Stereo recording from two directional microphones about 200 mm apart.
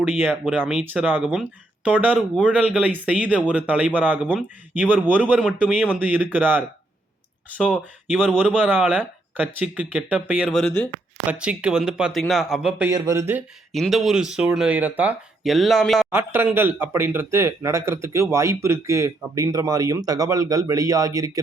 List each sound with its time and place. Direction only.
0.0 s speech: 10° right (ahead or behind)
12.9 s speech: 15° right (ahead or behind)
13.7 s speech: centre (ahead or behind)
16.1 s speech: 10° right (ahead or behind)